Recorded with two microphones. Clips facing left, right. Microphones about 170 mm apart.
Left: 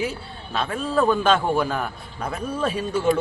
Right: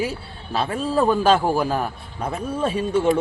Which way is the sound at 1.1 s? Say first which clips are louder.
Right 2 dB; 35° right (ahead or behind).